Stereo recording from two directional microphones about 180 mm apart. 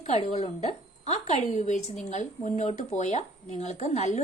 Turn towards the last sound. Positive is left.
turn(degrees=40)  # may be behind; listen again after turning